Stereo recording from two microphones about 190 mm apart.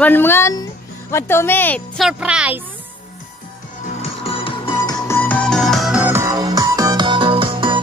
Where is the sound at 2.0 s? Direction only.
5° right (ahead or behind).